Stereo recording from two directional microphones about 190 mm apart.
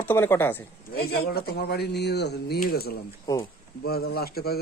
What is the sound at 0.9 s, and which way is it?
Speech, 55° left (ahead or behind).